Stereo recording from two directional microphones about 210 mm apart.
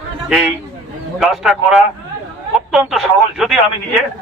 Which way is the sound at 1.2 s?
Centre (ahead or behind).